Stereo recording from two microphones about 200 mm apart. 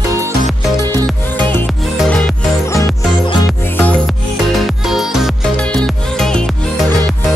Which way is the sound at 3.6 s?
10° left (ahead or behind).